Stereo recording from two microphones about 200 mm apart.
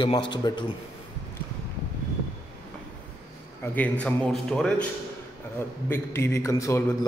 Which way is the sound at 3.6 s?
10° left (ahead or behind).